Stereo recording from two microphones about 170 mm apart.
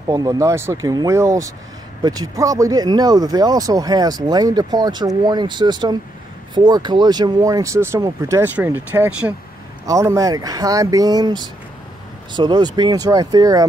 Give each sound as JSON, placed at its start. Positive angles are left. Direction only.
{"t": 0.1, "sound": "speech", "side_deg": -20}